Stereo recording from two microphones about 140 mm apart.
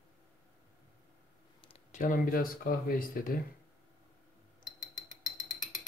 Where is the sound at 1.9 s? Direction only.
70° left (ahead or behind); by 3.3 s 90° left.